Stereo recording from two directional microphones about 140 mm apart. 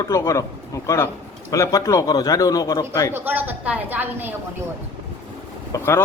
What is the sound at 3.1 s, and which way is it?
A woman's voice, 15° right (ahead or behind).